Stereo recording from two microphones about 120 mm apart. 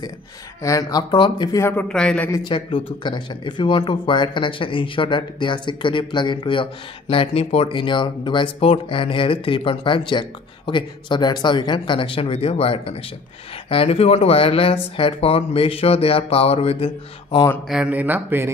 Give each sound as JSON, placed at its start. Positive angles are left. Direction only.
{"t": 0.6, "sound": "speech", "side_deg": 25}
{"t": 1.6, "sound": "speech", "side_deg": 20}
{"t": 1.9, "sound": "speech", "side_deg": 10}
{"t": 2.4, "sound": "speech", "side_deg": 40}
{"t": 17.6, "sound": "speech", "side_deg": -10}